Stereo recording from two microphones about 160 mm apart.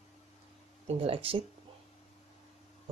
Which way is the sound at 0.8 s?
35° right (ahead or behind).